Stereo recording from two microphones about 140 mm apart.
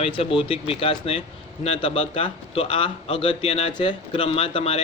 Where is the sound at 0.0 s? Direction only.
40° left (ahead or behind).